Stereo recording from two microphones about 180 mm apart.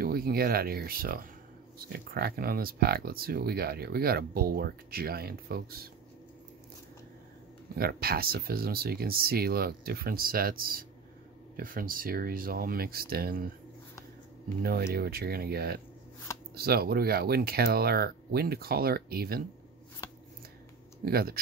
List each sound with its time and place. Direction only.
0.0 s speech: 55° right (ahead or behind)
7.7 s speech: 55° right (ahead or behind)
14.6 s speech: 60° right (ahead or behind)
21.0 s speech: 60° right (ahead or behind)